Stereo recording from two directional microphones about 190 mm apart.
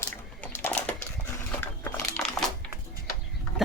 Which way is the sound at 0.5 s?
10° left (ahead or behind).